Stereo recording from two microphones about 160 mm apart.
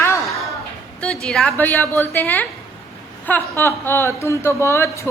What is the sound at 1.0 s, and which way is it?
A woman's voice, 5° left (ahead or behind).